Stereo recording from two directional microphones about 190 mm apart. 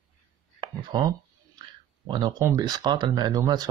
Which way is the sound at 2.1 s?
20° right (ahead or behind).